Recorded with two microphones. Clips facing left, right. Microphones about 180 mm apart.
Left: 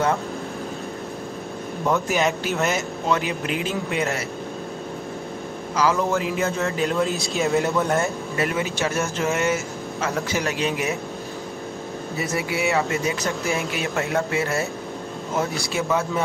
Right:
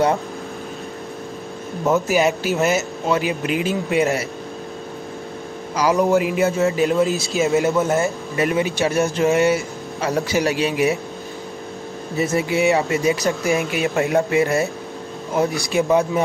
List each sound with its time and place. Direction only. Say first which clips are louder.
2.0 s speech: right 4 dB; 5° right (ahead or behind)
5.8 s speech: right 5 dB; 15° right (ahead or behind)
8.4 s speech: right 5 dB; 20° right (ahead or behind)
10.6 s speech: right 5 dB; 10° right (ahead or behind)
12.2 s speech: right 7 dB; 25° right (ahead or behind)